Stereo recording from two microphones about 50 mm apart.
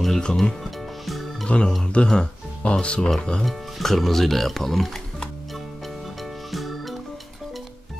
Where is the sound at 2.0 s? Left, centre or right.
Left.